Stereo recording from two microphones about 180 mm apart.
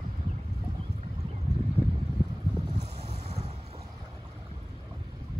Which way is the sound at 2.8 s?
35° right (ahead or behind).